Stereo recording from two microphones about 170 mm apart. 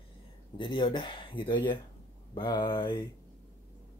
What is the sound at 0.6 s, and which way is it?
Speech, 30° left (ahead or behind).